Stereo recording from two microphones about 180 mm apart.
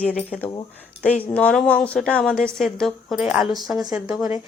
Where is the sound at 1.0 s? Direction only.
5° left (ahead or behind).